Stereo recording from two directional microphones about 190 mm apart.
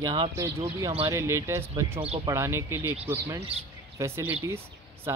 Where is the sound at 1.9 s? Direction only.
30° right (ahead or behind).